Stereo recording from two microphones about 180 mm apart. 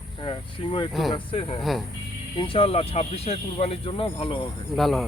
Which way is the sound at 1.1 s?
30° left (ahead or behind).